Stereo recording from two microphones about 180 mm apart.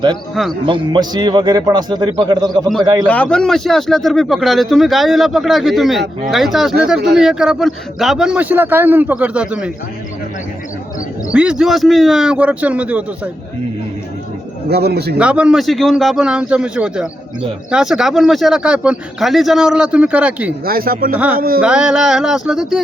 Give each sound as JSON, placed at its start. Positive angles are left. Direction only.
{"t": 0.6, "sound": "a man's voice", "side_deg": -25}
{"t": 3.1, "sound": "a man's voice", "side_deg": 5}
{"t": 11.3, "sound": "speech", "side_deg": -5}
{"t": 14.7, "sound": "a man's voice", "side_deg": -60}
{"t": 15.2, "sound": "speech", "side_deg": -5}
{"t": 20.7, "sound": "speech", "side_deg": -55}
{"t": 21.6, "sound": "speech", "side_deg": -5}